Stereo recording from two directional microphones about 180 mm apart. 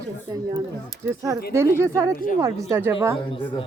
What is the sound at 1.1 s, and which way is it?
Speech, 15° right (ahead or behind).